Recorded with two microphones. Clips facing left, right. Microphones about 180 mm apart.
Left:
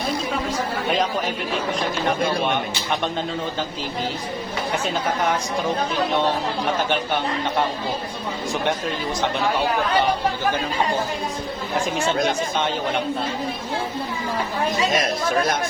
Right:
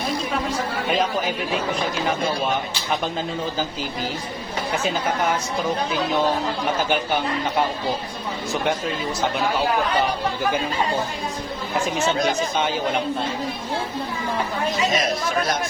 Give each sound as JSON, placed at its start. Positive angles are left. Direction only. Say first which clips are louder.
{"t": 2.0, "sound": "speech", "louder": "left 3 dB", "side_deg": 0}
{"t": 11.9, "sound": "speech", "louder": "even", "side_deg": 0}
{"t": 14.8, "sound": "speech", "louder": "left 1 dB", "side_deg": 55}